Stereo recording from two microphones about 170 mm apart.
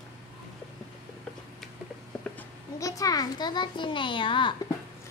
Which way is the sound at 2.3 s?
20° left (ahead or behind).